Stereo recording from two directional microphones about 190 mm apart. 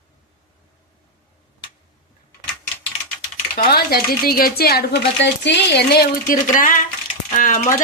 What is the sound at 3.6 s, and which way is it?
Speech, 55° left (ahead or behind).